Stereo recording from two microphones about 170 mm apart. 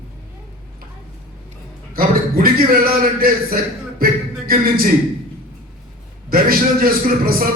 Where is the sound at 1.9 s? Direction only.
60° right (ahead or behind).